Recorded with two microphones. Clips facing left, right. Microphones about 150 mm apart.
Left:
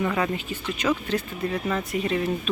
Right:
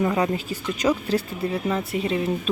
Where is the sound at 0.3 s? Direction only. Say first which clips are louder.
Right 2 dB; 40° right (ahead or behind).